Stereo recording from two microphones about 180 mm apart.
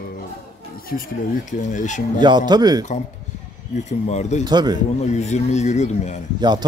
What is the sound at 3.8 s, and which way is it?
Speech, 40° left (ahead or behind).